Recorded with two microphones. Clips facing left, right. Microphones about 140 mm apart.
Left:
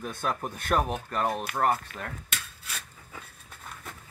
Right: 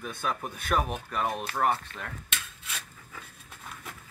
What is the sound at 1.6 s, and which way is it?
Cutlery, centre (ahead or behind).